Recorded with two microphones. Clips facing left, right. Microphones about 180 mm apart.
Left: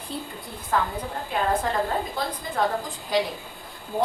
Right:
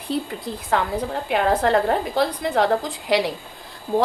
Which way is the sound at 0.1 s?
80° right.